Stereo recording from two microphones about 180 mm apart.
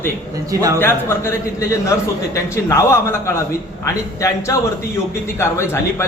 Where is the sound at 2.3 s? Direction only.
15° left (ahead or behind).